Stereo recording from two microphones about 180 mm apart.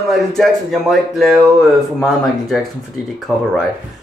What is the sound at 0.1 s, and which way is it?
Speech, centre (ahead or behind).